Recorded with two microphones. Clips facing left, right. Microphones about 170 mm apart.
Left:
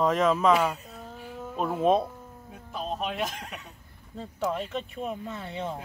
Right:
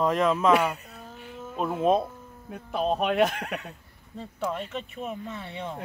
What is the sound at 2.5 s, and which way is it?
Speech, 65° right (ahead or behind).